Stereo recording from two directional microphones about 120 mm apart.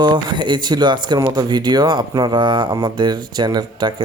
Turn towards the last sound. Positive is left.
turn(degrees=-35)  # may be behind; listen again after turning